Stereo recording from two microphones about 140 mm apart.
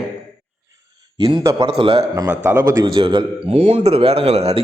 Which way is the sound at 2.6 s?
25° right (ahead or behind).